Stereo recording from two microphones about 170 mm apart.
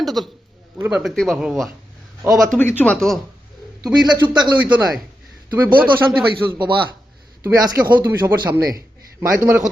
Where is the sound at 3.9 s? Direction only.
25° right (ahead or behind).